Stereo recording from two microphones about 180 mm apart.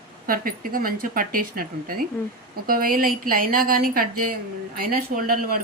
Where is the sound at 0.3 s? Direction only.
55° right (ahead or behind).